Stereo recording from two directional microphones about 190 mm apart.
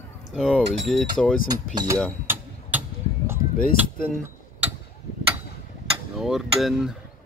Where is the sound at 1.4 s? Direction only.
15° right (ahead or behind).